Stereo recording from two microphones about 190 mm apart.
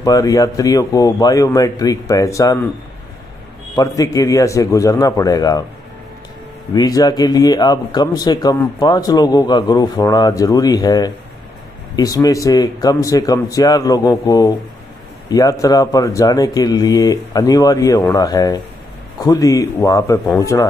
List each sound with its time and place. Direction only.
0.0 s speech: 20° left (ahead or behind)
3.7 s a man's voice: 20° left (ahead or behind)
6.7 s a man's voice: 20° left (ahead or behind)